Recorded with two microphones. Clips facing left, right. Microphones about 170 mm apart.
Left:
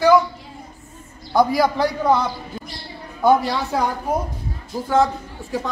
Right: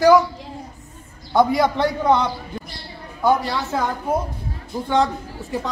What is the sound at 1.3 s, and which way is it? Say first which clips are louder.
Speech: even; centre (ahead or behind).